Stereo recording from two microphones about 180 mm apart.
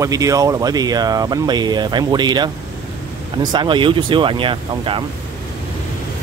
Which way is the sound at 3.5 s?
25° right (ahead or behind).